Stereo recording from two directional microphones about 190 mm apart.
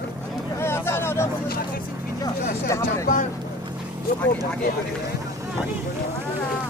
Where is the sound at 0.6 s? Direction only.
15° left (ahead or behind).